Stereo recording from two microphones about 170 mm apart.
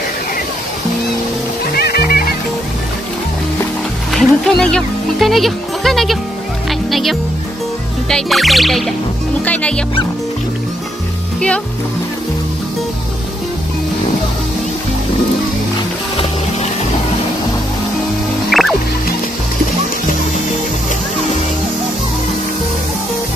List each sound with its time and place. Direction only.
1.7 s music: 65° left (ahead or behind)
4.1 s speech: centre (ahead or behind)
6.7 s music: centre (ahead or behind)
9.4 s speech: 10° left (ahead or behind)
18.5 s music: centre (ahead or behind)